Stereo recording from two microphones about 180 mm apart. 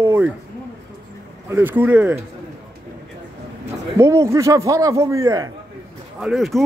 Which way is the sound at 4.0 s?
15° right (ahead or behind).